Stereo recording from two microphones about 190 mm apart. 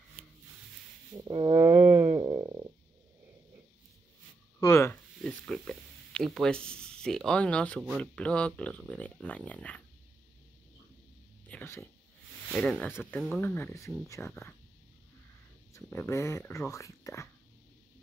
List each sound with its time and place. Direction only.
1.1 s a sound: 20° right (ahead or behind)
4.6 s speech: 15° left (ahead or behind)
11.4 s a sound: 10° left (ahead or behind)
12.4 s speech: 5° left (ahead or behind)
13.5 s speech: 10° left (ahead or behind)
15.7 s speech: 15° left (ahead or behind)